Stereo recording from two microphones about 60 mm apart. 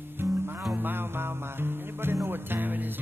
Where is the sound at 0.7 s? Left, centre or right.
Right.